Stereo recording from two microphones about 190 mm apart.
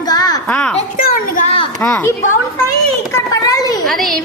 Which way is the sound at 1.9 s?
15° left (ahead or behind).